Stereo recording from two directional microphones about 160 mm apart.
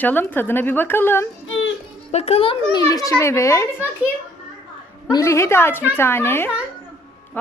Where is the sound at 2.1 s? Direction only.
40° left (ahead or behind).